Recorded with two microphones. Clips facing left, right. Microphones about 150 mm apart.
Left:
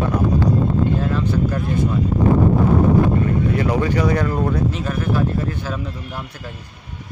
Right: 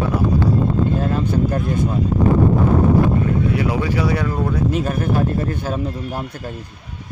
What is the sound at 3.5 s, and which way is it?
Speech, 10° right (ahead or behind).